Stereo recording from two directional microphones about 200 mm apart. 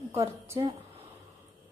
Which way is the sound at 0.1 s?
15° right (ahead or behind).